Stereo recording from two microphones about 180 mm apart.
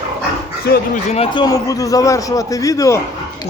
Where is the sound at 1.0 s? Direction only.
35° left (ahead or behind); by 3.0 s 20° left (ahead or behind).